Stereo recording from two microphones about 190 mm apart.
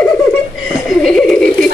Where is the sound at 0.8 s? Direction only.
Centre (ahead or behind).